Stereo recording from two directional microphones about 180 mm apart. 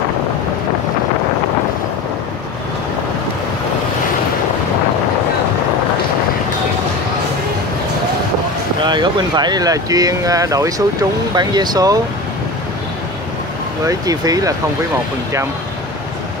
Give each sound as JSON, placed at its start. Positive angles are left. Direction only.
{"t": 8.8, "sound": "speech", "side_deg": -25}
{"t": 13.8, "sound": "speech", "side_deg": -20}